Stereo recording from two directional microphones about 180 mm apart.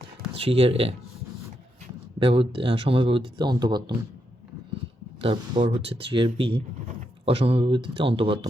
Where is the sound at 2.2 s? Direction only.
30° right (ahead or behind).